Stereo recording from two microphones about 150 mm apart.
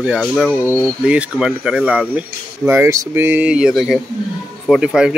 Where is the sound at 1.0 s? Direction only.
10° right (ahead or behind).